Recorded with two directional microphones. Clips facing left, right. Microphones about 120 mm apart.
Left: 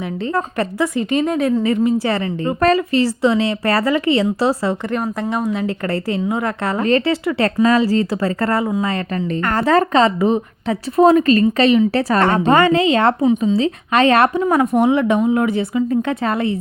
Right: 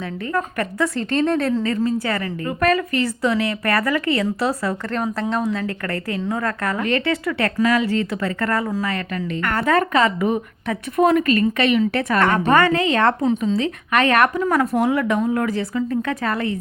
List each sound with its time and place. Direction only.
0.3 s a woman's voice: 30° left (ahead or behind)
0.9 s a woman's voice: 10° left (ahead or behind); by 4.7 s 25° left (ahead or behind)
4.9 s speech: 10° left (ahead or behind)
5.5 s a woman's voice: 25° left (ahead or behind)